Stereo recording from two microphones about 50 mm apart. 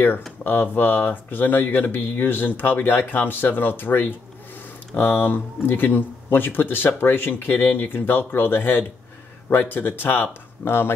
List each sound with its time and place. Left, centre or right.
0.4 s speech: left